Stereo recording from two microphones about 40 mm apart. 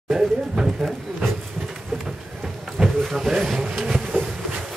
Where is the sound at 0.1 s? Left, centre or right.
Centre.